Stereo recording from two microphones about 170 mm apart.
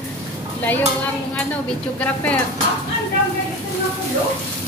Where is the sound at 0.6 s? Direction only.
10° left (ahead or behind).